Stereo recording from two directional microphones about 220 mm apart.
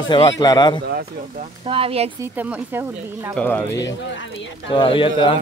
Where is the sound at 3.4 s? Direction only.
10° left (ahead or behind).